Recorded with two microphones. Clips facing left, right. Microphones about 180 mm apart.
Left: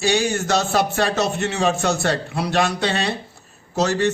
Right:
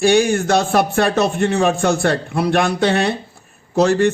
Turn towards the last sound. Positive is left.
turn(degrees=-55)  # may be behind; listen again after turning